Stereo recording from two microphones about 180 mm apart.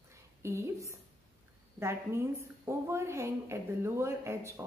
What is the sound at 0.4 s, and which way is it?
A woman's voice, 15° right (ahead or behind).